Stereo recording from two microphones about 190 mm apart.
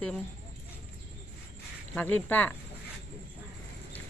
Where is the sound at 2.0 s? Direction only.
10° left (ahead or behind).